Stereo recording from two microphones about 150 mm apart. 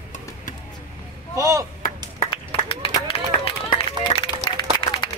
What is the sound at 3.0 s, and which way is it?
Run, 40° left (ahead or behind).